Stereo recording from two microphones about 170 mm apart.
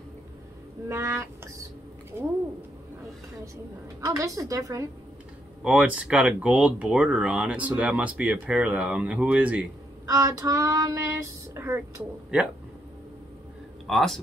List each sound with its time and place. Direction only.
0.8 s speech: 15° right (ahead or behind)
4.0 s child singing: 20° right (ahead or behind)
5.6 s speech: 5° right (ahead or behind)
10.0 s child singing: 20° right (ahead or behind)
11.5 s a sound: 15° right (ahead or behind)
13.8 s a man's voice: centre (ahead or behind)